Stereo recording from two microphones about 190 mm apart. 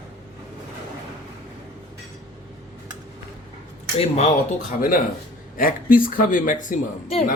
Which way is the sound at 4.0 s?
35° left (ahead or behind).